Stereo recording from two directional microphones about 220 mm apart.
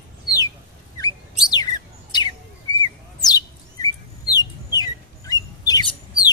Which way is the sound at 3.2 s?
15° left (ahead or behind).